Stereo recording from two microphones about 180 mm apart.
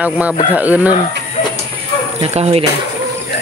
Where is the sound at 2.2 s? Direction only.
35° right (ahead or behind).